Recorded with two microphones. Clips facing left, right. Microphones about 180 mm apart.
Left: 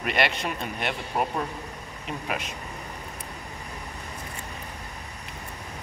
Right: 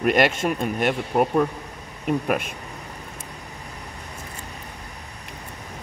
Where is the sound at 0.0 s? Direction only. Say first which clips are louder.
Right 7 dB; 45° right (ahead or behind).